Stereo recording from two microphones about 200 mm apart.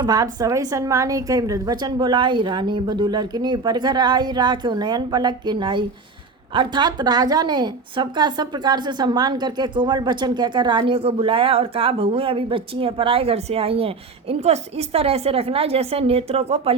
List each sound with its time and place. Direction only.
0.0 s a woman's voice: 20° right (ahead or behind)